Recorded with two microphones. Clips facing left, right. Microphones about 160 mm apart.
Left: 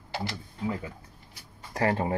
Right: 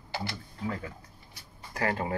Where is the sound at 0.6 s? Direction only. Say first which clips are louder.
Left 3 dB; 15° left (ahead or behind).